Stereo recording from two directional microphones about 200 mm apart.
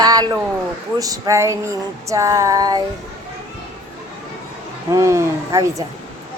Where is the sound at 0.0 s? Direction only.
20° right (ahead or behind).